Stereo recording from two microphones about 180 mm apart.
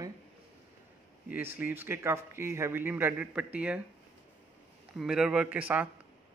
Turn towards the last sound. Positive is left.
turn(degrees=-10)  # may be behind; listen again after turning